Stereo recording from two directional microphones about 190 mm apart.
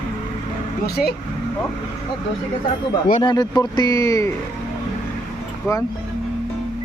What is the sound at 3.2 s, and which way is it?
Speech, 20° left (ahead or behind).